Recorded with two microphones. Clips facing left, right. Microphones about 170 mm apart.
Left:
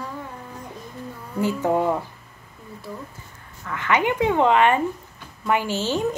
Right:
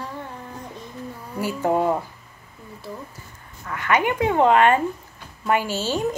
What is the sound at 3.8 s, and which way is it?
A woman's voice, 20° left (ahead or behind).